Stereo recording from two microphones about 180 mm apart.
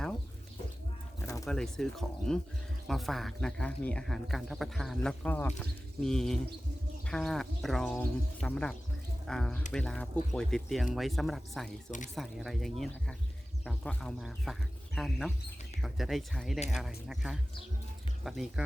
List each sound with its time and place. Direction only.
1.5 s speech: 5° left (ahead or behind)
11.9 s speech: 45° left (ahead or behind)
12.1 s speech: centre (ahead or behind)